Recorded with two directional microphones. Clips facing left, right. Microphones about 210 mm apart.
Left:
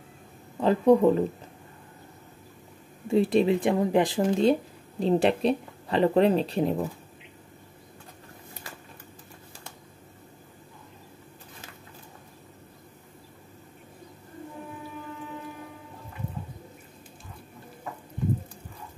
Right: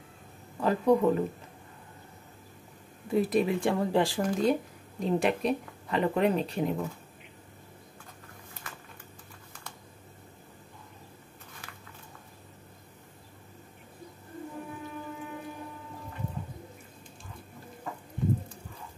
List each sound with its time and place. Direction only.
0.6 s a woman's voice: 30° left (ahead or behind)
3.1 s a woman's voice: 25° left (ahead or behind)